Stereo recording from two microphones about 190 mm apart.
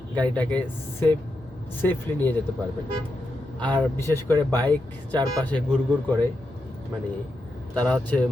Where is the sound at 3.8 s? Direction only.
15° left (ahead or behind).